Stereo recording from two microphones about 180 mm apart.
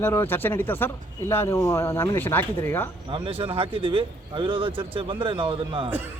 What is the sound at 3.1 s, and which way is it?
Speech, 30° right (ahead or behind).